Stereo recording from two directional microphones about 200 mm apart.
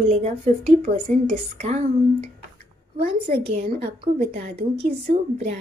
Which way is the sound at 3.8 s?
50° right (ahead or behind).